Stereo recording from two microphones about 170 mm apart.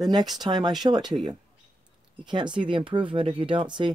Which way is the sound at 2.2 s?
25° right (ahead or behind).